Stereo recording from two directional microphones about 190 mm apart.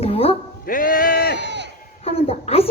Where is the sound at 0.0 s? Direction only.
30° left (ahead or behind).